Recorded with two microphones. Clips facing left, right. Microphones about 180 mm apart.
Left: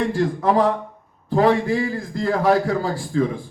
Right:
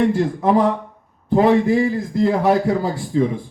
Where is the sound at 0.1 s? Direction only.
20° right (ahead or behind).